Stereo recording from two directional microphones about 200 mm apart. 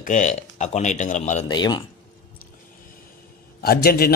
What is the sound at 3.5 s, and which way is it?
Speech, 50° left (ahead or behind).